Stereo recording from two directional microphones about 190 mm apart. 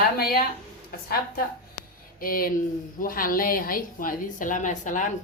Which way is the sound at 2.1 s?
50° left (ahead or behind).